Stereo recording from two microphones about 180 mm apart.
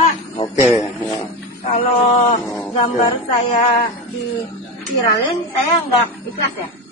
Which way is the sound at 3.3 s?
35° left (ahead or behind).